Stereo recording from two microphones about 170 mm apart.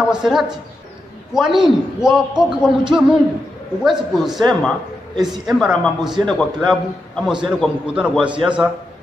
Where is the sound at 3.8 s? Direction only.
Centre (ahead or behind).